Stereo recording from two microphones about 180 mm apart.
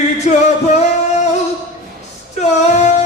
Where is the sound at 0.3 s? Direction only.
40° left (ahead or behind).